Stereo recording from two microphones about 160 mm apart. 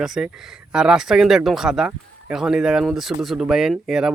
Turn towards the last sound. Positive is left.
turn(degrees=-5)  # may be behind; listen again after turning